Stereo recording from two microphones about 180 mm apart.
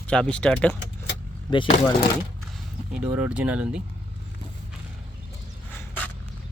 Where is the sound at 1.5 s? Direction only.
25° left (ahead or behind).